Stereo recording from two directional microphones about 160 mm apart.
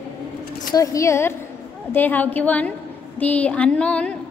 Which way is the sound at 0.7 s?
20° left (ahead or behind).